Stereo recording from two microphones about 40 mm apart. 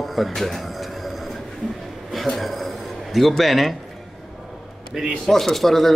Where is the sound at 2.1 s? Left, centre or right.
Centre.